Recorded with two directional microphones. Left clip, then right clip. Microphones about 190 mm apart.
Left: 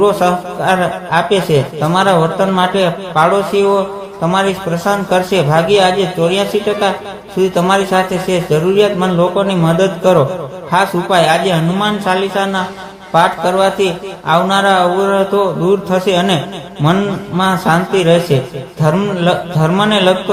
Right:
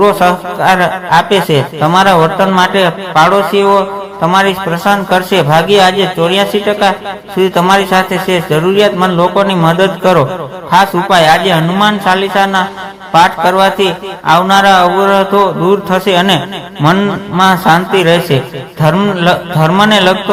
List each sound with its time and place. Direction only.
0.0 s a man's voice: 15° right (ahead or behind)